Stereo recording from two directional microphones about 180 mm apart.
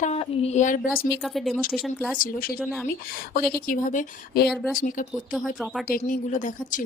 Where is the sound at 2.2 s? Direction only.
50° left (ahead or behind).